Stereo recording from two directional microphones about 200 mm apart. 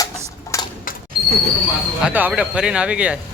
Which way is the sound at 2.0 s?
5° right (ahead or behind).